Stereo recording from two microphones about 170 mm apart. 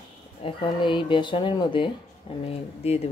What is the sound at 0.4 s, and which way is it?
Speech, 30° left (ahead or behind).